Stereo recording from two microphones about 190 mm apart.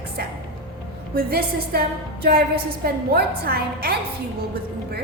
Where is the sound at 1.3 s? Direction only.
55° right (ahead or behind).